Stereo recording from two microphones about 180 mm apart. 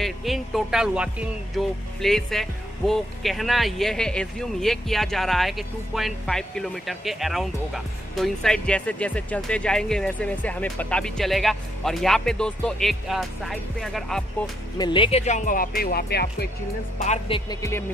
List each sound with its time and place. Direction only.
0.0 s speech: centre (ahead or behind)
14.8 s speech: 25° left (ahead or behind); by 16.4 s 60° left (ahead or behind)
17.0 s speech: 40° left (ahead or behind)
17.5 s speech: 15° left (ahead or behind)